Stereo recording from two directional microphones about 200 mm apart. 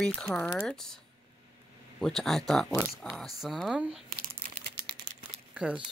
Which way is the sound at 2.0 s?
Centre (ahead or behind).